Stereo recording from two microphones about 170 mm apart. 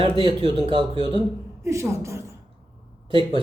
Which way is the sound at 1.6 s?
15° right (ahead or behind).